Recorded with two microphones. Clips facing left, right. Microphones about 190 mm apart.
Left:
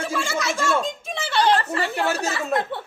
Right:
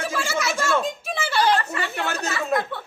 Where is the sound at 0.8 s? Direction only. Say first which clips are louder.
Right 2 dB; 5° right (ahead or behind).